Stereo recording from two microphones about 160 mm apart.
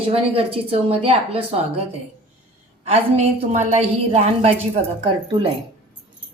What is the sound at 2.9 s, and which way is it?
A woman's voice, 45° right (ahead or behind).